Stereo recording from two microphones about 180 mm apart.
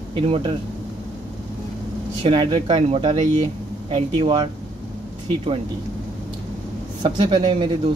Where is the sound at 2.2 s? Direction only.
30° right (ahead or behind).